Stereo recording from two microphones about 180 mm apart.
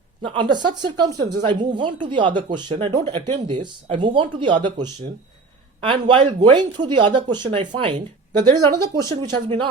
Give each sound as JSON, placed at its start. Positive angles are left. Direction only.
{"t": 0.2, "sound": "speech", "side_deg": -25}